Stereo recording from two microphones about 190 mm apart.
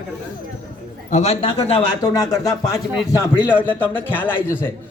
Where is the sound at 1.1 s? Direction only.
35° left (ahead or behind).